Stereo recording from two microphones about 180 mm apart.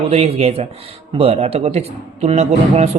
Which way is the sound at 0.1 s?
35° right (ahead or behind).